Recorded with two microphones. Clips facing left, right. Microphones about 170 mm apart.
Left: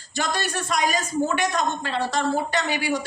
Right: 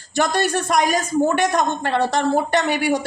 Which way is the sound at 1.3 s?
55° right (ahead or behind).